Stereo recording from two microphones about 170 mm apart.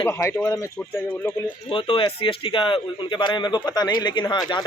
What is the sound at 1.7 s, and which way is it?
Speech, 30° left (ahead or behind).